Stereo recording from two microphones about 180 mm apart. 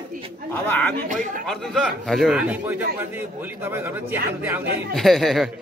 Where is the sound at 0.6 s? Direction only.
15° left (ahead or behind).